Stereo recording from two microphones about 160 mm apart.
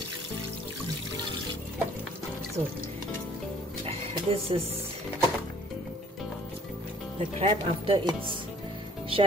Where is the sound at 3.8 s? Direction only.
35° right (ahead or behind).